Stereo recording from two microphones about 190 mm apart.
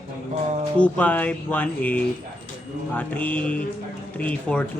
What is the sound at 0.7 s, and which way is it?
Speech, 5° left (ahead or behind).